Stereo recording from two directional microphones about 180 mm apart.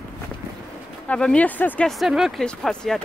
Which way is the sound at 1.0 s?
5° left (ahead or behind).